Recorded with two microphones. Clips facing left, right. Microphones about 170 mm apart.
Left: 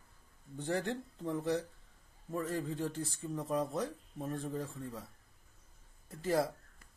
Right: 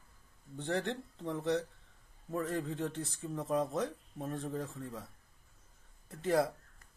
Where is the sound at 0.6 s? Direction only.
5° left (ahead or behind).